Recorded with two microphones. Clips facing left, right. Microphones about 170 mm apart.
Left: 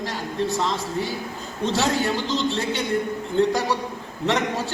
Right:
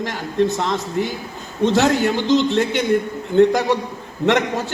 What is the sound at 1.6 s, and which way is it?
A man's voice, 65° right (ahead or behind).